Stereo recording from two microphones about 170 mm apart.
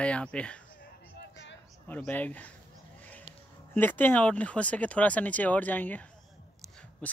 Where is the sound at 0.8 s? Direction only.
80° left.